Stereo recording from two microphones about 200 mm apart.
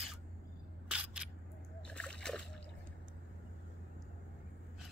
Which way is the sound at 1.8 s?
5° left (ahead or behind).